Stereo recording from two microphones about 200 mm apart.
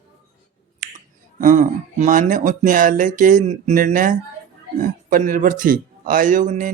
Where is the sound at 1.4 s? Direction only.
40° right (ahead or behind).